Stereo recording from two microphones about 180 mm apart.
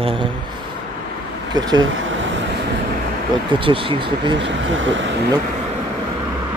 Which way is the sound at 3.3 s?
30° right (ahead or behind).